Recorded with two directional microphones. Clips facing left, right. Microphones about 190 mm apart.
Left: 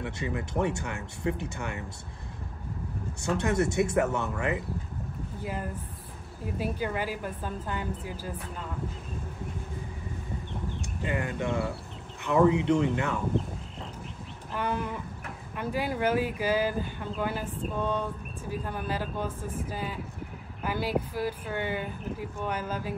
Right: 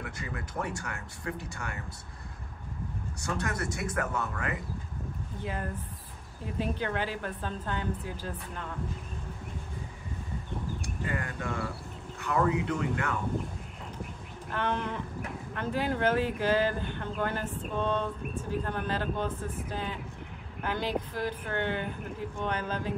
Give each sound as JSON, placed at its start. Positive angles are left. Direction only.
{"t": 0.0, "sound": "speech", "side_deg": 25}
{"t": 3.3, "sound": "speech", "side_deg": 25}
{"t": 5.4, "sound": "speech", "side_deg": 5}
{"t": 10.8, "sound": "speech", "side_deg": 20}
{"t": 14.5, "sound": "speech", "side_deg": 10}